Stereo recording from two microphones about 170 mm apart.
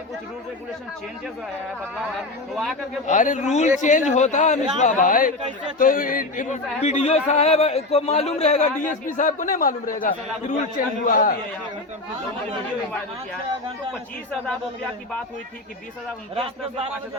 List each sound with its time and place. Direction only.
3.1 s speech: 50° left (ahead or behind)
16.3 s a man's voice: 35° right (ahead or behind)